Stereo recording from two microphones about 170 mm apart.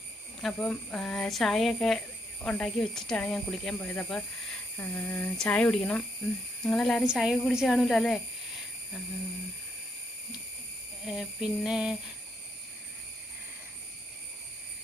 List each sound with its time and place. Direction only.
0.4 s speech: 5° left (ahead or behind)
11.0 s speech: centre (ahead or behind)